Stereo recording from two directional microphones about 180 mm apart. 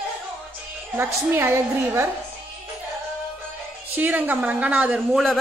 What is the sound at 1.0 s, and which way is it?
A woman's voice, 15° right (ahead or behind).